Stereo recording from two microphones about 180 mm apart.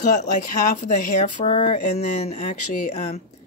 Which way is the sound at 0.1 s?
45° left (ahead or behind).